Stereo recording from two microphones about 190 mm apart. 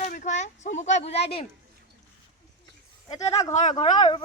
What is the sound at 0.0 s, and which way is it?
Speech, 40° left (ahead or behind).